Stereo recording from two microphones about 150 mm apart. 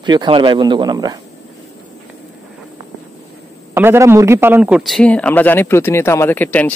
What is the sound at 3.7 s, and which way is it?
A man's voice, 15° right (ahead or behind).